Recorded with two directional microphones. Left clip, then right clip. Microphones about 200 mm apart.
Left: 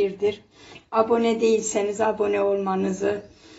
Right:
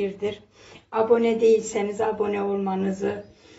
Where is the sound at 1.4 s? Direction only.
Centre (ahead or behind).